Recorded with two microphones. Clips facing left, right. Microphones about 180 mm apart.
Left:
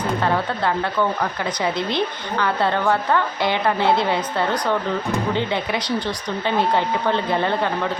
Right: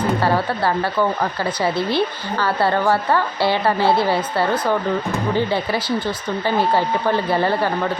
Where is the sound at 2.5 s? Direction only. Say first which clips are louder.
Right 3 dB; 5° right (ahead or behind).